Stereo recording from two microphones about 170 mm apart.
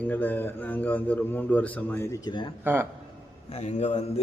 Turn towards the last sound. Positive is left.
turn(degrees=45)  # may be behind; listen again after turning